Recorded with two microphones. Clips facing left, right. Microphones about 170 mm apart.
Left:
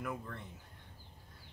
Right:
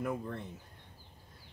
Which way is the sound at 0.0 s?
30° right (ahead or behind).